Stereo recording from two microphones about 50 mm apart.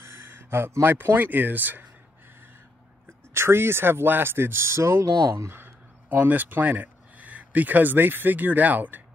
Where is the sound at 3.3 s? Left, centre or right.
Right.